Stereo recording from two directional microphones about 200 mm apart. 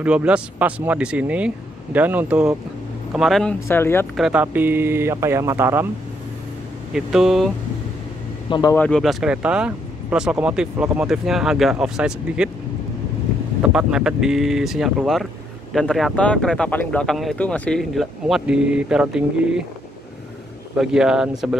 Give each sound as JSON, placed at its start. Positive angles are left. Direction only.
{"t": 0.0, "sound": "speech", "side_deg": -5}
{"t": 3.6, "sound": "speech", "side_deg": 10}
{"t": 4.2, "sound": "speech", "side_deg": -5}
{"t": 6.9, "sound": "speech", "side_deg": 0}
{"t": 8.5, "sound": "speech", "side_deg": 20}
{"t": 8.7, "sound": "speech", "side_deg": 5}
{"t": 13.6, "sound": "speech", "side_deg": -5}
{"t": 20.7, "sound": "speech", "side_deg": -5}